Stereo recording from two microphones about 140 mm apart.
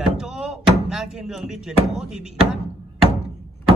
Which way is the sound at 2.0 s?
5° right (ahead or behind).